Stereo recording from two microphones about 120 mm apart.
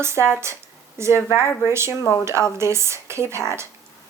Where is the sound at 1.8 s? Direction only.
25° left (ahead or behind).